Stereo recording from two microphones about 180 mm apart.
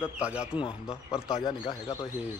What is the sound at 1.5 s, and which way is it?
Speech, 25° left (ahead or behind).